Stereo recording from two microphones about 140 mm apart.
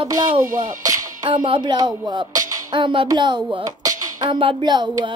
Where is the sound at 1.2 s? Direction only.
35° right (ahead or behind).